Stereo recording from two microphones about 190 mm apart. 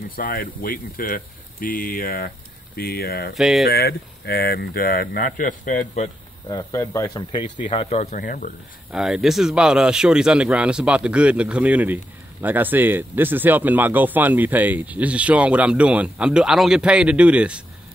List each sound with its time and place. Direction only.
0.1 s speech: 50° left (ahead or behind)
3.3 s speech: centre (ahead or behind)
3.6 s speech: 55° left (ahead or behind)
6.5 s speech: 15° left (ahead or behind)
7.6 s speech: 30° left (ahead or behind)
8.2 s speech: 45° left (ahead or behind)
8.9 s speech: 5° right (ahead or behind)